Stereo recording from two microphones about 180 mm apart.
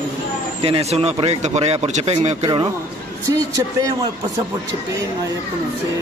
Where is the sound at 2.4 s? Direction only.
30° right (ahead or behind).